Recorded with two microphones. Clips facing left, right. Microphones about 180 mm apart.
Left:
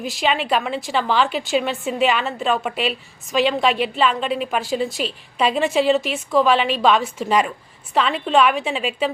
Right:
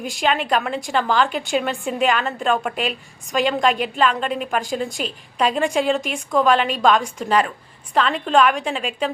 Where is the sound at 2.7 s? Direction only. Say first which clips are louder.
Left 1 dB; 45° right (ahead or behind).